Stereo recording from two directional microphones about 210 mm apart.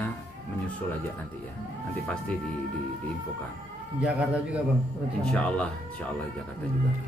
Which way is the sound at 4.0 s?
5° right (ahead or behind).